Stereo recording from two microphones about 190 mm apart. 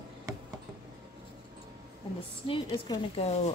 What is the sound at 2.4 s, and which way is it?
Speech, 25° left (ahead or behind).